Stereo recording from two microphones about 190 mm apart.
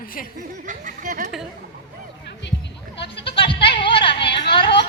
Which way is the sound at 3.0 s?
65° left (ahead or behind).